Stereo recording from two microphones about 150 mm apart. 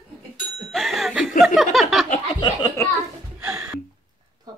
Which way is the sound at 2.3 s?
30° left (ahead or behind).